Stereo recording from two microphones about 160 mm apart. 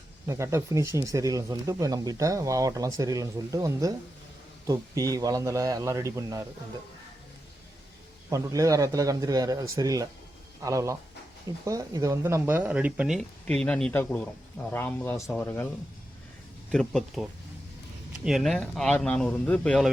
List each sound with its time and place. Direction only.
0.3 s speech: 15° right (ahead or behind)
8.3 s speech: 20° right (ahead or behind); by 15.6 s 10° left (ahead or behind)
16.7 s speech: 5° left (ahead or behind)
18.3 s speech: centre (ahead or behind)